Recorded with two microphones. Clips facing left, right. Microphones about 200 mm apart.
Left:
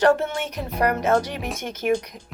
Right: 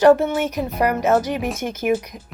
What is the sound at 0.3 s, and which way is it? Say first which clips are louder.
Speech: right 7 dB; 5° right (ahead or behind).